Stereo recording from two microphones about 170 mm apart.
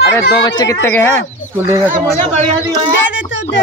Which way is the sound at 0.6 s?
15° left (ahead or behind).